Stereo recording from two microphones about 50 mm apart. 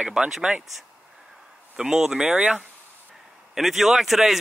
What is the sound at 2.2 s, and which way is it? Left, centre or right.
Speech, right.